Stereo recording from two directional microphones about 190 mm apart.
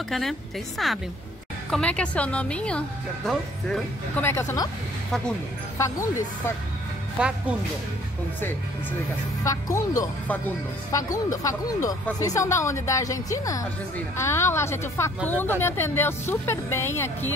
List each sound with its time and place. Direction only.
0.1 s a woman's voice: centre (ahead or behind)
4.2 s speech: 10° left (ahead or behind)
7.2 s a woman's voice: 5° right (ahead or behind)
9.4 s speech: 15° left (ahead or behind)